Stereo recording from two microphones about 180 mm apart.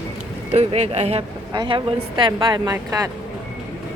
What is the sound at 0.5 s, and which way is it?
Speech, 35° right (ahead or behind).